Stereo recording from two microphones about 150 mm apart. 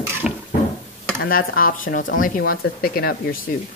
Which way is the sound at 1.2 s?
75° left (ahead or behind).